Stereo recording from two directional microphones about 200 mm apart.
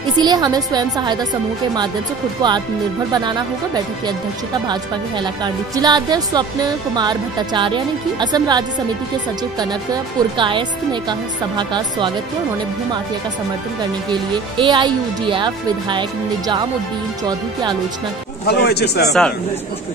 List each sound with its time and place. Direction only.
0.2 s speech: 20° right (ahead or behind)
2.4 s speech: 20° right (ahead or behind)
5.2 s speech: 20° right (ahead or behind)
10.3 s speech: 25° right (ahead or behind)
14.3 s speech: 25° right (ahead or behind)
18.5 s speech: 55° left (ahead or behind)